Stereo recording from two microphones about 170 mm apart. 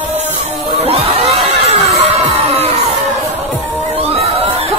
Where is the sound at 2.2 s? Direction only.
35° right (ahead or behind).